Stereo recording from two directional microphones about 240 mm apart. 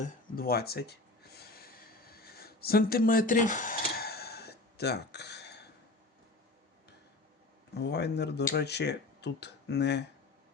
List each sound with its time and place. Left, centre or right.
0.3 s speech: left
1.4 s a sound: left
7.7 s speech: left